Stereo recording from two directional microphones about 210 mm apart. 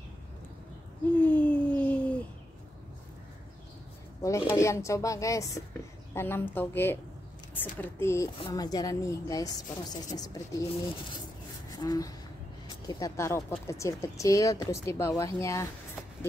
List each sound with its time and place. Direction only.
1.2 s a sound: 5° left (ahead or behind)
4.2 s speech: 15° left (ahead or behind)
11.7 s speech: 20° left (ahead or behind)